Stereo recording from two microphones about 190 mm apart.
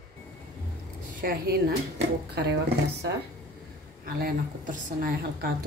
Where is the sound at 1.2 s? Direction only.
55° right (ahead or behind).